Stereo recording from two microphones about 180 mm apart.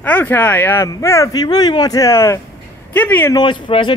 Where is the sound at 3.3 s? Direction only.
25° left (ahead or behind).